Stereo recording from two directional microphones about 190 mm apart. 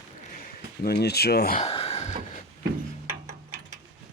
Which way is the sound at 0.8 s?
55° left (ahead or behind).